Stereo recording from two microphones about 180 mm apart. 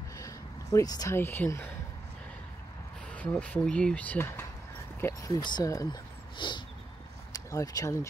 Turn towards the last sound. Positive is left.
turn(degrees=20)  # may be behind; listen again after turning